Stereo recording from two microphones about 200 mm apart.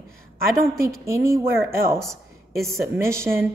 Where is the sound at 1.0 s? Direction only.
15° right (ahead or behind).